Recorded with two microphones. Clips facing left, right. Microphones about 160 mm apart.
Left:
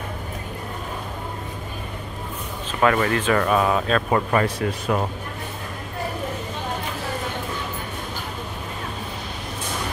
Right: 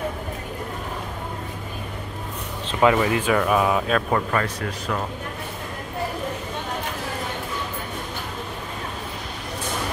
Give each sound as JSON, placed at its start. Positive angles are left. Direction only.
{"t": 2.8, "sound": "speech", "side_deg": -10}
{"t": 4.1, "sound": "speech", "side_deg": 15}
{"t": 4.6, "sound": "speech", "side_deg": 25}